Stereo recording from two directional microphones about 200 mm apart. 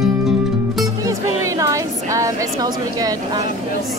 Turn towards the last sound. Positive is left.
turn(degrees=-20)  # may be behind; listen again after turning